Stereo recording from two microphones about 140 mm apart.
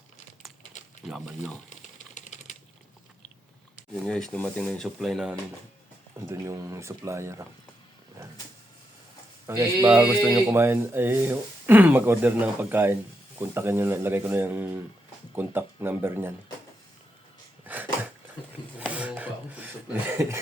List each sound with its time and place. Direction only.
1.0 s speech: centre (ahead or behind)
3.9 s speech: 5° left (ahead or behind)
6.1 s speech: 20° right (ahead or behind)
9.5 s speech: 25° right (ahead or behind)
18.8 s a sound: 10° right (ahead or behind)